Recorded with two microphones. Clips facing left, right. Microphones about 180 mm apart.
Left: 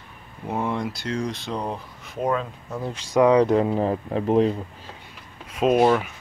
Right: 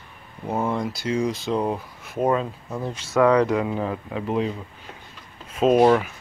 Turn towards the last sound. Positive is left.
turn(degrees=0)  # may be behind; listen again after turning